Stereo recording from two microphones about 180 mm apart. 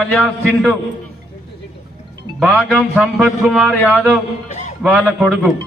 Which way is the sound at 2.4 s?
5° right (ahead or behind).